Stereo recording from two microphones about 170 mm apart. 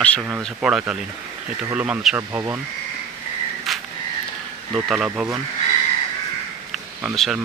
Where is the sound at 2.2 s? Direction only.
15° right (ahead or behind).